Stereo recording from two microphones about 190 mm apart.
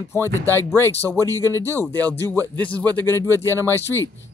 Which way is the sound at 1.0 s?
15° right (ahead or behind).